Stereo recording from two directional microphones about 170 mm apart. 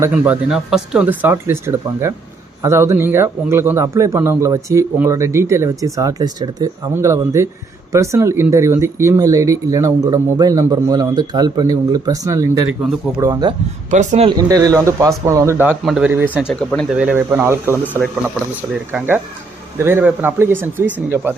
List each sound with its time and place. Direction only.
0.1 s speech: 5° right (ahead or behind)
1.3 s a man's voice: 15° right (ahead or behind)
13.9 s speech: 45° right (ahead or behind)
14.3 s speech: 20° right (ahead or behind)
15.8 s speech: 5° right (ahead or behind)
16.6 s speech: 5° left (ahead or behind)
17.0 s a man's voice: 10° right (ahead or behind)
18.9 s a man's voice: 10° right (ahead or behind)